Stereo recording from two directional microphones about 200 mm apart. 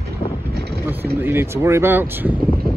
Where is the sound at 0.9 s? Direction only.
10° right (ahead or behind).